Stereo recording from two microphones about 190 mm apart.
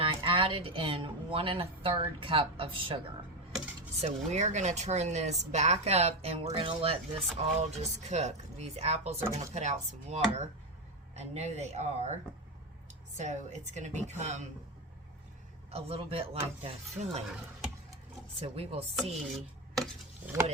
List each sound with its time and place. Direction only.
0.0 s speech: 25° right (ahead or behind)
4.0 s speech: 35° right (ahead or behind)
13.1 s speech: 40° right (ahead or behind)
15.7 s speech: 30° right (ahead or behind)
18.3 s speech: 30° right (ahead or behind)
19.7 s chopping: centre (ahead or behind)